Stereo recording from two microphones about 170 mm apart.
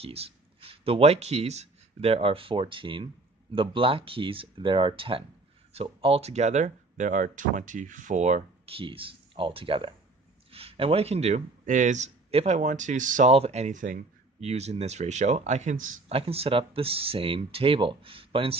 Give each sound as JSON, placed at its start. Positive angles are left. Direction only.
{"t": 0.0, "sound": "speech", "side_deg": -35}
{"t": 13.3, "sound": "speech", "side_deg": -40}
{"t": 14.4, "sound": "speech", "side_deg": -40}
{"t": 16.1, "sound": "speech", "side_deg": -35}